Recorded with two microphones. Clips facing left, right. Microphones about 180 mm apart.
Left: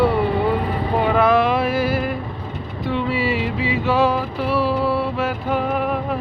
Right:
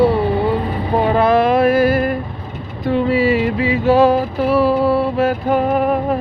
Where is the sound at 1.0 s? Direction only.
35° right (ahead or behind).